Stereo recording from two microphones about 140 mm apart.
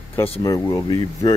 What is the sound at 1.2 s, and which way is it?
Speech, 35° left (ahead or behind).